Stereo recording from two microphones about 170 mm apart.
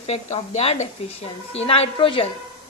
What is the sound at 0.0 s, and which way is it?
A woman's voice, 35° left (ahead or behind).